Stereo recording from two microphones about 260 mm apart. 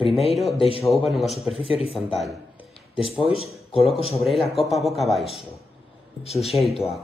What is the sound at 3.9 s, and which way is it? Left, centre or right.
Speech, left.